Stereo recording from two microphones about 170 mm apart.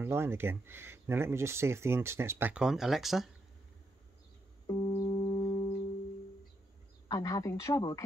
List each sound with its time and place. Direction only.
0.0 s speech: 15° right (ahead or behind)
4.6 s music: 25° left (ahead or behind)
7.1 s speech: 20° left (ahead or behind)